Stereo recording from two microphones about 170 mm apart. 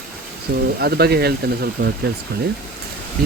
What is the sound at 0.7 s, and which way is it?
Speech, 70° right (ahead or behind).